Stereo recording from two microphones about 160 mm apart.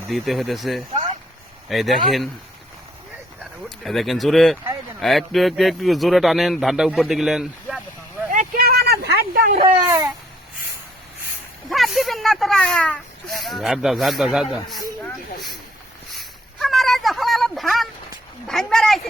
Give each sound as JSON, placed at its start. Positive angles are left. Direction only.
{"t": 0.1, "sound": "speech", "side_deg": 0}
{"t": 3.8, "sound": "speech", "side_deg": 0}
{"t": 8.3, "sound": "vehicle", "side_deg": -60}
{"t": 9.8, "sound": "babbling", "side_deg": -20}
{"t": 11.7, "sound": "speech", "side_deg": 0}
{"t": 16.1, "sound": "a sound", "side_deg": 0}